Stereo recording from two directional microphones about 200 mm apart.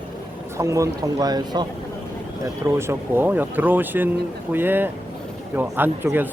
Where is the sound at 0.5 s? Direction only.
15° right (ahead or behind).